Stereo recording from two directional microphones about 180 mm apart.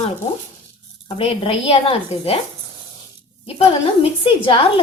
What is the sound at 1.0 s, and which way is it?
A woman's voice, 30° left (ahead or behind).